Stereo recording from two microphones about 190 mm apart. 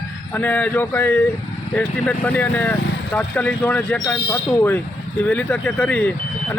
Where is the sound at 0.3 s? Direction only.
10° left (ahead or behind).